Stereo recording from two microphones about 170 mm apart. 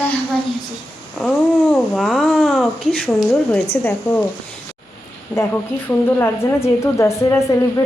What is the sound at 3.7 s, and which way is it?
Speech, 10° left (ahead or behind).